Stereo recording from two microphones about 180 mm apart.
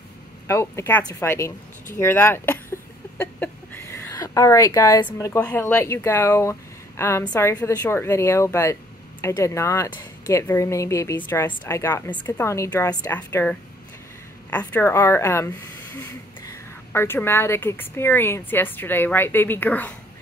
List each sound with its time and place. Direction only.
0.5 s a woman's voice: 15° left (ahead or behind)